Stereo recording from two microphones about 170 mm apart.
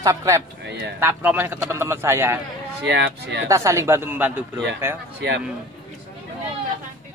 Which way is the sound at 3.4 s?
15° right (ahead or behind).